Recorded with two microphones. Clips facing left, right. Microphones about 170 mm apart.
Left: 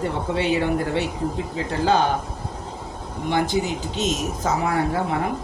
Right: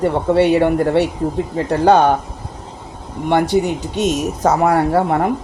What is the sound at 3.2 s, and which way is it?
Speech, 60° right (ahead or behind).